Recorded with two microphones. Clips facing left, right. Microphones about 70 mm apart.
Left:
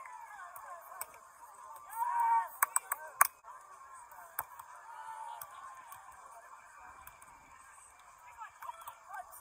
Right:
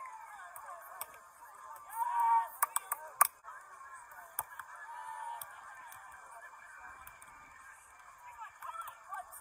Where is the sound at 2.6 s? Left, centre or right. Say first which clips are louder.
Left 1 dB; left.